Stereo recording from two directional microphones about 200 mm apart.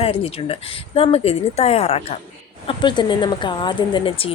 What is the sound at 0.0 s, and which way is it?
A woman's voice, 30° left (ahead or behind).